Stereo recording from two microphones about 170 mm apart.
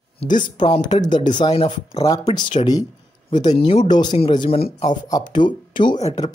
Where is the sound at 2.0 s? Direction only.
20° left (ahead or behind).